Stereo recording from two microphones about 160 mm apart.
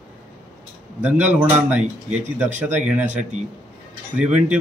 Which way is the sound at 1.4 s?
10° right (ahead or behind).